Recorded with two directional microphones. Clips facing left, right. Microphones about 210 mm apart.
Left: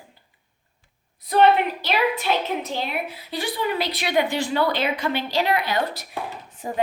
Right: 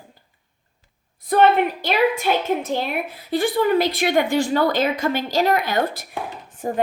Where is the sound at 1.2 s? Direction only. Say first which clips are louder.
Right 1 dB; 50° right (ahead or behind).